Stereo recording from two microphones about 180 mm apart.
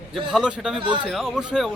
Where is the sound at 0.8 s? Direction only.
25° right (ahead or behind).